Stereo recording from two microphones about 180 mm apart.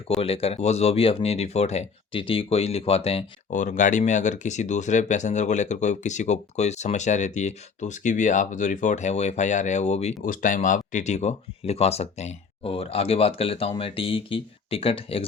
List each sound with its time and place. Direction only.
0.2 s speech: 30° left (ahead or behind)
10.2 s speech: 50° left (ahead or behind); by 15.3 s 30° left (ahead or behind)